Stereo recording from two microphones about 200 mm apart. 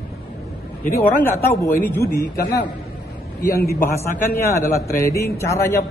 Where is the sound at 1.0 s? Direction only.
10° left (ahead or behind).